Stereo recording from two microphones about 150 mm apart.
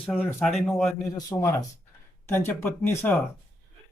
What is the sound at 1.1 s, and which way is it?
Speech, 20° left (ahead or behind).